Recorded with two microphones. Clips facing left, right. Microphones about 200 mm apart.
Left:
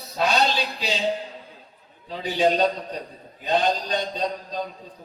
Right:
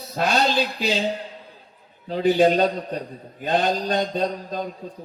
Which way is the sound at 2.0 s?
55° right (ahead or behind).